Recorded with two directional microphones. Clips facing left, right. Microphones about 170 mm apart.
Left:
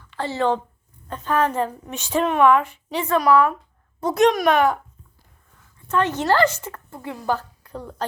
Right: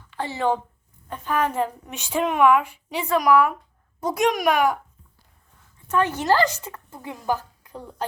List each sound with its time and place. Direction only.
0.1 s a woman's voice: 15° right (ahead or behind)
5.9 s a woman's voice: 10° right (ahead or behind)